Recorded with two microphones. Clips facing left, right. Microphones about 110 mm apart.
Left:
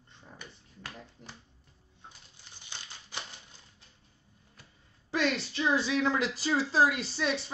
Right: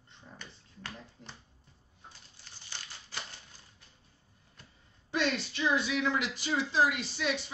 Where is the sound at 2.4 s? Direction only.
20° left (ahead or behind).